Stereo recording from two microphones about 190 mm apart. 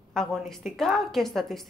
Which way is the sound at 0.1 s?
Centre (ahead or behind).